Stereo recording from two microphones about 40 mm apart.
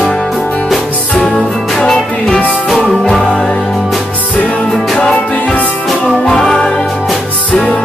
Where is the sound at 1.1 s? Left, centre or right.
Left.